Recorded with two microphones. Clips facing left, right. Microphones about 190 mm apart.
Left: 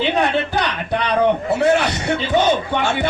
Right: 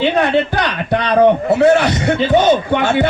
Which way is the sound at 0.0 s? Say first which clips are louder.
Right 4 dB; 65° right (ahead or behind).